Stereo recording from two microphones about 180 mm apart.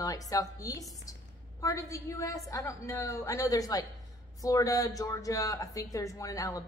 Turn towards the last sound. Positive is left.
turn(degrees=20)  # may be behind; listen again after turning